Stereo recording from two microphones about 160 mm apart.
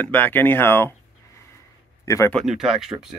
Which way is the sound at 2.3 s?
Centre (ahead or behind).